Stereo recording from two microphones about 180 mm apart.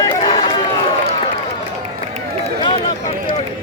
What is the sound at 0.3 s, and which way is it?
Run, 30° left (ahead or behind).